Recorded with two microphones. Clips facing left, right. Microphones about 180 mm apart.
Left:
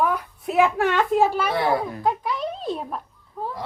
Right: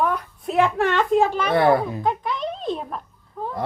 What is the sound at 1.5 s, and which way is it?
Speech, 55° right (ahead or behind).